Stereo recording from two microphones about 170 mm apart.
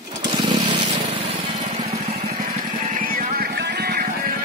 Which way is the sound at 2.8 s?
55° right (ahead or behind).